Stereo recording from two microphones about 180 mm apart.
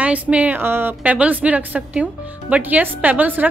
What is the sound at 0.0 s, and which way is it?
Speech, 5° right (ahead or behind).